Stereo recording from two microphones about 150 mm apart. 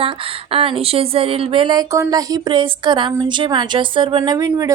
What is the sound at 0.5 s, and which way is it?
Speech, 35° right (ahead or behind).